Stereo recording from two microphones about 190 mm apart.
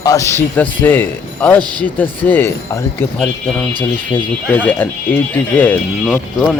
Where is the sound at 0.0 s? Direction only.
15° left (ahead or behind).